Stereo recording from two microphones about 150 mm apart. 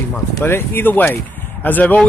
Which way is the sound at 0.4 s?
15° left (ahead or behind).